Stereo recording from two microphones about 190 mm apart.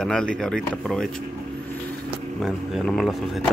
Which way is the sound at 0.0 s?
5° left (ahead or behind).